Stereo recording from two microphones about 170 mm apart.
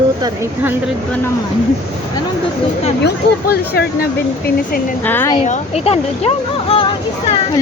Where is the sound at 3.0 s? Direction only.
65° left (ahead or behind).